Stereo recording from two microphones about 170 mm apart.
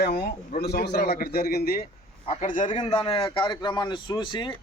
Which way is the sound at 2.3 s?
50° left (ahead or behind).